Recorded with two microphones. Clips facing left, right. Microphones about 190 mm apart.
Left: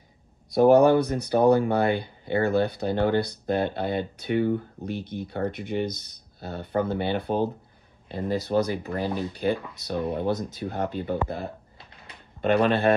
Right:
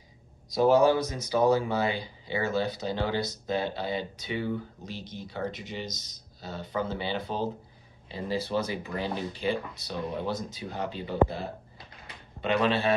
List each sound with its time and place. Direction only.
0.5 s speech: 60° left (ahead or behind)
9.0 s speech: 40° left (ahead or behind)